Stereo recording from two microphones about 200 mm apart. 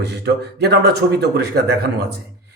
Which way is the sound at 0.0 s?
55° right (ahead or behind).